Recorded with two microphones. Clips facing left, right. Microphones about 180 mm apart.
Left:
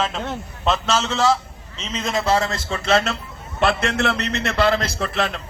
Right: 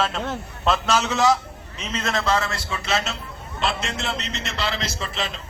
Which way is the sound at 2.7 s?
55° left (ahead or behind).